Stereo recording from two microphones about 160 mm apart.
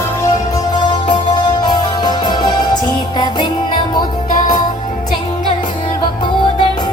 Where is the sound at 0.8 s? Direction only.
25° left (ahead or behind).